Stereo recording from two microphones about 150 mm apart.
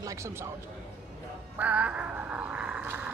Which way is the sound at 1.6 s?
10° right (ahead or behind).